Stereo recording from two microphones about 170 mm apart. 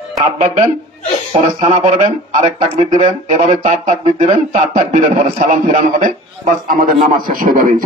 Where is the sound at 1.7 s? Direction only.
45° right (ahead or behind).